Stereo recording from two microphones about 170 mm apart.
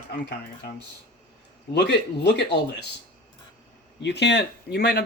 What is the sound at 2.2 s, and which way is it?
Speech, 85° left.